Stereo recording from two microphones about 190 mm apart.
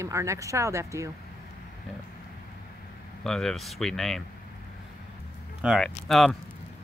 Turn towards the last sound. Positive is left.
turn(degrees=0)  # may be behind; listen again after turning